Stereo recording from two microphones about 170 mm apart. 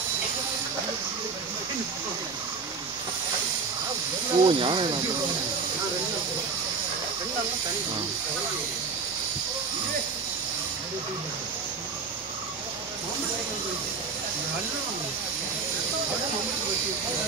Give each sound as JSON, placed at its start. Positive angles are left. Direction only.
{"t": 4.4, "sound": "speech", "side_deg": -30}